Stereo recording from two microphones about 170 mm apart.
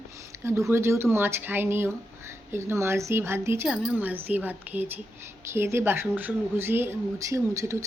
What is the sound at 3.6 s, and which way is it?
Speech, 5° right (ahead or behind).